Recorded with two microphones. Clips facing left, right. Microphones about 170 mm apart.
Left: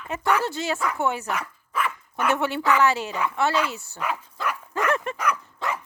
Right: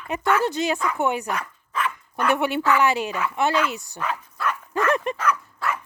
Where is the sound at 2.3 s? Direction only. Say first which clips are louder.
Even; 15° right (ahead or behind).